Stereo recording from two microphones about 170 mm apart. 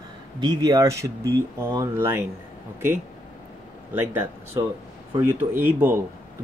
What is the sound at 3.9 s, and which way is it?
Speech, 15° right (ahead or behind).